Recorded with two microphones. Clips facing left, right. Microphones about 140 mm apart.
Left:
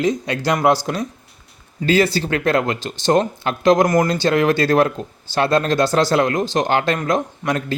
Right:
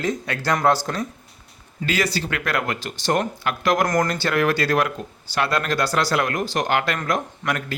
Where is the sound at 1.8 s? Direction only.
30° left (ahead or behind).